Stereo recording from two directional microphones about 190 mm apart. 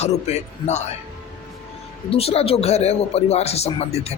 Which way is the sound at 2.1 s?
30° left (ahead or behind).